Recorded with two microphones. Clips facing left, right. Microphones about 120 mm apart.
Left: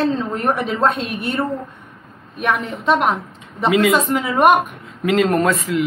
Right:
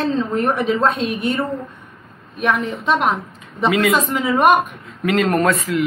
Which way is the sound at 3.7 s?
25° left (ahead or behind).